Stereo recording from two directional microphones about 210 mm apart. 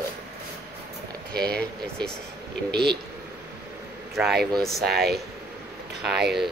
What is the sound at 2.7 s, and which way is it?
Speech, 50° right (ahead or behind).